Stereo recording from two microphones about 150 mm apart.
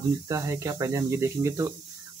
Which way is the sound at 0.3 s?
20° right (ahead or behind).